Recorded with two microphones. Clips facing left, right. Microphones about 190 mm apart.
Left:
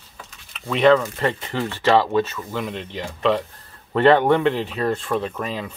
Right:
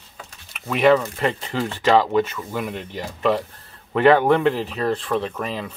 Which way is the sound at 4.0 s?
10° right (ahead or behind).